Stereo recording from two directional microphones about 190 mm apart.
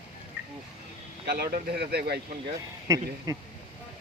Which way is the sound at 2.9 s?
15° right (ahead or behind).